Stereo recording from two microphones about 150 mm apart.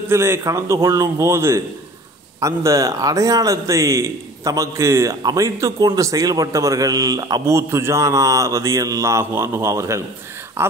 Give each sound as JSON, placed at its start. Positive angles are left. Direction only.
{"t": 0.1, "sound": "speech", "side_deg": -15}